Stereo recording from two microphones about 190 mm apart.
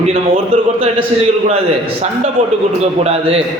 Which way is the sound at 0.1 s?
30° right (ahead or behind).